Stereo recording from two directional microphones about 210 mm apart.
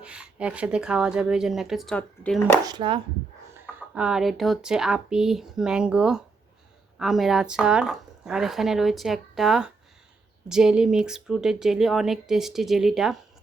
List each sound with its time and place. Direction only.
0.0 s speech: 5° right (ahead or behind)
2.6 s speech: 20° right (ahead or behind)
3.5 s speech: 10° right (ahead or behind)